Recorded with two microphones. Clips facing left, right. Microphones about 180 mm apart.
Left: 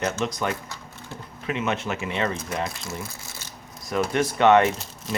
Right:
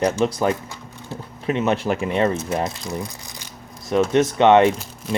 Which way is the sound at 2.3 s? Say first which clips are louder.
Right 5 dB; 25° right (ahead or behind).